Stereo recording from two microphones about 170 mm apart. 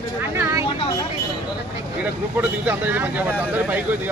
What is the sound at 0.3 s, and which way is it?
Vehicle, 20° right (ahead or behind).